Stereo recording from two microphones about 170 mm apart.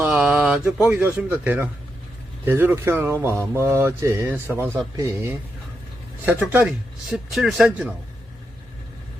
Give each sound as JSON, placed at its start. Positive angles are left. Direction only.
{"t": 0.0, "sound": "speech", "side_deg": -5}